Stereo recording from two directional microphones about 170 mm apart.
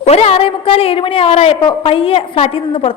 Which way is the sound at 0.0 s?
35° left (ahead or behind).